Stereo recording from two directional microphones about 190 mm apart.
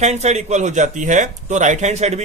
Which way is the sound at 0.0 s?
35° right (ahead or behind).